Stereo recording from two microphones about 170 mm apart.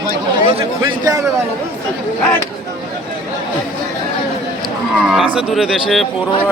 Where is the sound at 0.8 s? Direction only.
20° right (ahead or behind).